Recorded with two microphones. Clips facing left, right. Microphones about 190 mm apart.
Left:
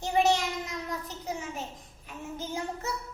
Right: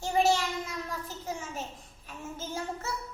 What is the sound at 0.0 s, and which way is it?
Child singing, 20° left (ahead or behind).